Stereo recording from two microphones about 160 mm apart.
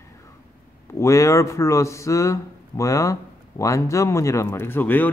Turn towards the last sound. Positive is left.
turn(degrees=10)  # may be behind; listen again after turning